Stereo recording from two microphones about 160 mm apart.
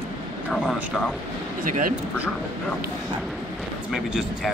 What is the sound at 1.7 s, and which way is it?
Speech, 55° right (ahead or behind).